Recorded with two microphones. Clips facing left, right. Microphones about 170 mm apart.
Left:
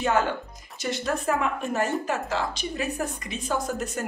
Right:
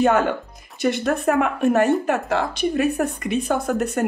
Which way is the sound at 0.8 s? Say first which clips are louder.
Right 7 dB; 60° right (ahead or behind).